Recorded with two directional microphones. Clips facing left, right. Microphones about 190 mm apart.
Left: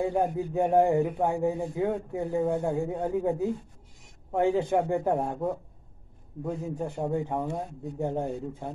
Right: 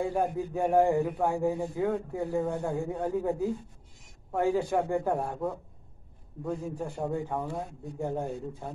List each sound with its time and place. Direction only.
0.0 s a man's voice: 20° left (ahead or behind)